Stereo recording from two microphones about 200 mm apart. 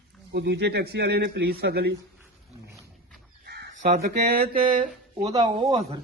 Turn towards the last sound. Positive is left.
turn(degrees=-15)  # may be behind; listen again after turning